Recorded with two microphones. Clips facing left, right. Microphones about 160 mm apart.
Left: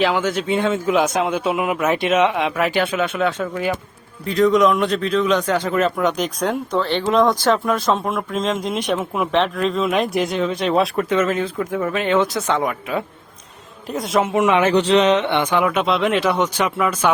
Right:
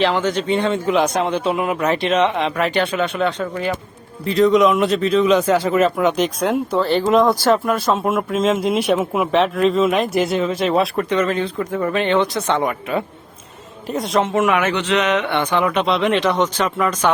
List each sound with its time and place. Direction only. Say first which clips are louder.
0.0 s a man's voice: right 1 dB; 5° left (ahead or behind)
14.4 s speech: left 2 dB; 25° left (ahead or behind)
14.7 s a sound: left 4 dB; 35° left (ahead or behind)
15.4 s speech: even; 10° left (ahead or behind)